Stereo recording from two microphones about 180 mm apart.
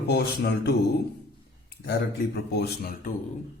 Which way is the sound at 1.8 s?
65° left (ahead or behind).